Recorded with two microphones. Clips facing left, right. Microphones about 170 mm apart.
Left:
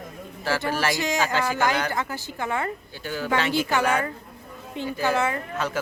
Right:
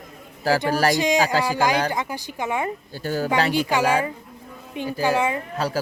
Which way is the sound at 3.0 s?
40° right (ahead or behind).